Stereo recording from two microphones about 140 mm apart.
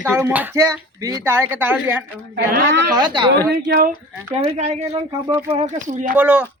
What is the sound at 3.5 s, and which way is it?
Speech, 90° right.